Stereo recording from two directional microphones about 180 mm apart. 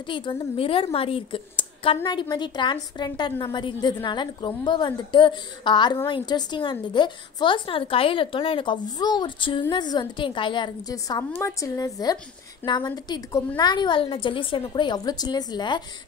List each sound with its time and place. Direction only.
0.0 s a woman's voice: 25° left (ahead or behind)